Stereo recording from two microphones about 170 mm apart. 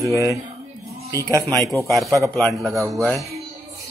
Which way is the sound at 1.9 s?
Centre (ahead or behind).